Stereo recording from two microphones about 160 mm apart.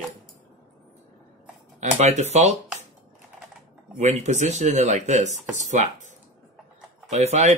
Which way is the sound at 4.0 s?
45° right (ahead or behind).